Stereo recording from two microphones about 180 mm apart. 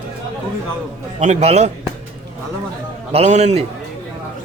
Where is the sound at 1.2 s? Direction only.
35° right (ahead or behind).